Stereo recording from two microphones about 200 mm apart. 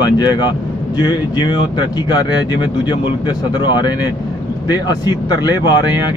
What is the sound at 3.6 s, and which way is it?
Speech, 20° left (ahead or behind).